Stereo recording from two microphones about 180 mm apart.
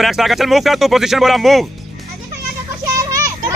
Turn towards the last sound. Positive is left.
turn(degrees=-20)  # may be behind; listen again after turning